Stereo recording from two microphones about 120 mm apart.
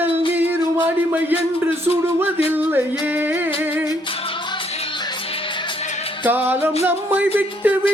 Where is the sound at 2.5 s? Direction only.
15° right (ahead or behind).